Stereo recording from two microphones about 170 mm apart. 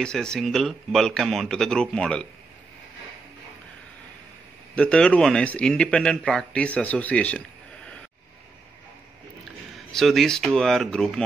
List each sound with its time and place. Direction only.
0.0 s speech: 5° left (ahead or behind)
4.7 s speech: 5° left (ahead or behind)
9.8 s speech: centre (ahead or behind)